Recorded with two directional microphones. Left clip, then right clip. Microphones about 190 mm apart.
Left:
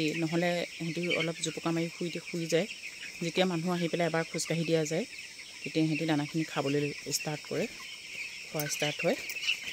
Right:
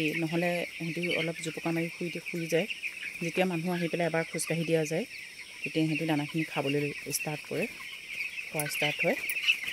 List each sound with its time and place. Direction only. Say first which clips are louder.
0.0 s speech: right 1 dB; 5° right (ahead or behind)
3.3 s speech: even; 5° right (ahead or behind)
8.7 s speech: right 2 dB; 5° right (ahead or behind)